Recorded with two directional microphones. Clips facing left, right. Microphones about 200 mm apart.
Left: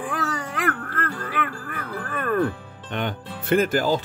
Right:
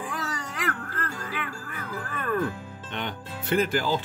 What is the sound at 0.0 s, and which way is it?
Speech, 55° left (ahead or behind).